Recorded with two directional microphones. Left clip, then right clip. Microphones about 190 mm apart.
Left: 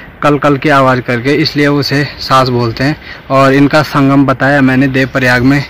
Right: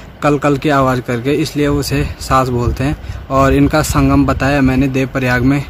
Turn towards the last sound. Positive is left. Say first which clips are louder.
# left 6 dB
turn(degrees=10)  # may be behind; listen again after turning